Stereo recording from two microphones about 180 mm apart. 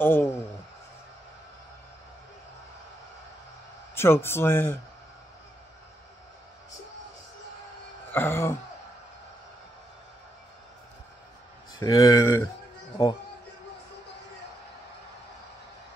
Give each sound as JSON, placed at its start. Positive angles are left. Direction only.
{"t": 0.0, "sound": "speech", "side_deg": 10}
{"t": 3.9, "sound": "speech", "side_deg": 15}
{"t": 8.1, "sound": "speech", "side_deg": 10}
{"t": 11.8, "sound": "speech", "side_deg": 20}